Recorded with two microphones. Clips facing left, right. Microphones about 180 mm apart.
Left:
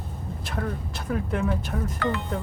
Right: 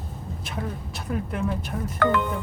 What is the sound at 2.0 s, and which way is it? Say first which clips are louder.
Speech: right 7 dB; 60° right (ahead or behind).